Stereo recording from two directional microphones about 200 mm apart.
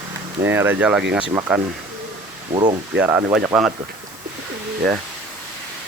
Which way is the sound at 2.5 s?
25° right (ahead or behind).